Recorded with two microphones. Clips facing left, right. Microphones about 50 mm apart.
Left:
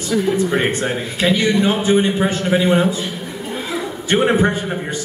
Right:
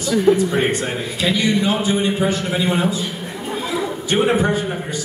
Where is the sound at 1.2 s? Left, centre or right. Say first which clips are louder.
Left 3 dB; left.